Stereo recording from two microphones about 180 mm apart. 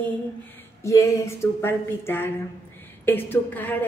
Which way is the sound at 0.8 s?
15° left (ahead or behind).